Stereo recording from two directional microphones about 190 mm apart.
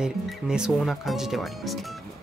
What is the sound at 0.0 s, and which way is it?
Speech, 5° right (ahead or behind).